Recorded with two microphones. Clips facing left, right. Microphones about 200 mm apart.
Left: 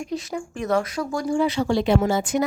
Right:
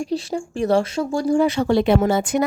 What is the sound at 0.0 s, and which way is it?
Speech, 30° right (ahead or behind).